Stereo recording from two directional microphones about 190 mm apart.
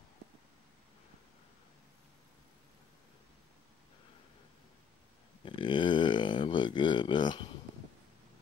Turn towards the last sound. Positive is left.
turn(degrees=25)  # may be behind; listen again after turning